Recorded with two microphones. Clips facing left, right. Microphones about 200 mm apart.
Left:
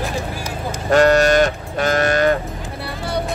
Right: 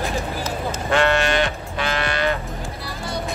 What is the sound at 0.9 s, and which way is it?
Livestock, 40° left (ahead or behind).